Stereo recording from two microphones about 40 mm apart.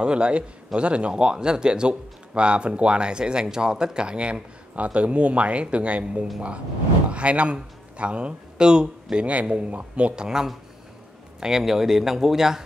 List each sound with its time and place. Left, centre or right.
0.0 s a man's voice: right
9.2 s speech: right
10.2 s speech: centre